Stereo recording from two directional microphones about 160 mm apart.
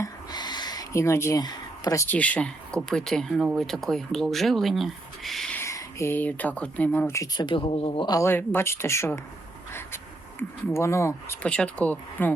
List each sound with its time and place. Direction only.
0.0 s speech: 25° left (ahead or behind); by 5.5 s centre (ahead or behind)
5.5 s speech: 15° left (ahead or behind)
7.4 s speech: 35° left (ahead or behind)
8.0 s speech: 20° left (ahead or behind)
10.7 s speech: 15° left (ahead or behind)
11.4 s speech: 5° left (ahead or behind)